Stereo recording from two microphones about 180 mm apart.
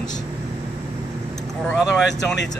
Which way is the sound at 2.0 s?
75° left (ahead or behind).